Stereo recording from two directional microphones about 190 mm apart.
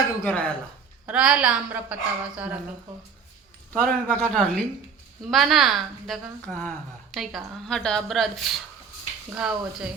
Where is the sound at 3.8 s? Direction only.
10° left (ahead or behind).